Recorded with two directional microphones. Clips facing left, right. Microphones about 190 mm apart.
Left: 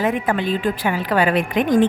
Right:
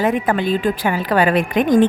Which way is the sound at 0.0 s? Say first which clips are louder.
Right 2 dB; 40° right (ahead or behind).